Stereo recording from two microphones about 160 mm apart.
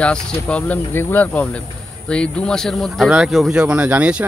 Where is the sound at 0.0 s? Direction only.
5° left (ahead or behind).